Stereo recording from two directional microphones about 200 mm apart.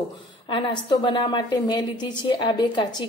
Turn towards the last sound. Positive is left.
turn(degrees=25)  # may be behind; listen again after turning